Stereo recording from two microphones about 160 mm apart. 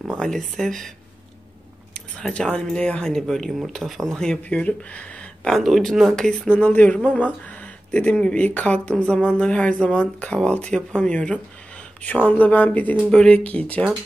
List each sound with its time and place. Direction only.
0.0 s speech: centre (ahead or behind)
2.0 s speech: 5° left (ahead or behind)